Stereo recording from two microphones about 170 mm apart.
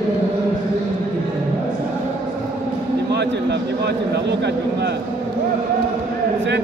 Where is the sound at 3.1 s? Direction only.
80° right.